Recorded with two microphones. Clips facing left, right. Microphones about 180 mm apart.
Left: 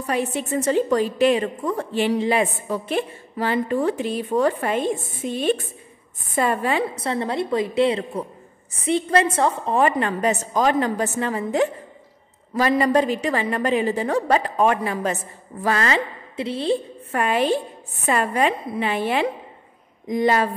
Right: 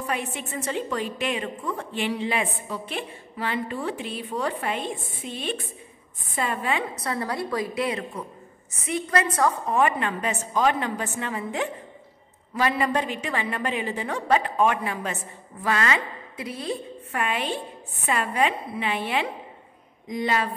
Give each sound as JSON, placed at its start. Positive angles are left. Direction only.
{"t": 0.0, "sound": "a woman's voice", "side_deg": 35}
{"t": 17.1, "sound": "a woman's voice", "side_deg": 40}